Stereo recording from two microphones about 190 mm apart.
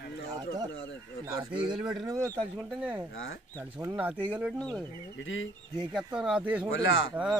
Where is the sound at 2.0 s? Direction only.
15° right (ahead or behind).